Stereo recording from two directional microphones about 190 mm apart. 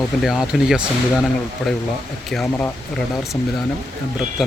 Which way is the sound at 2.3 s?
5° left (ahead or behind).